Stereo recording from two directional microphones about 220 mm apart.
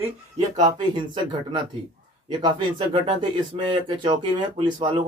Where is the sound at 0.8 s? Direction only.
20° right (ahead or behind).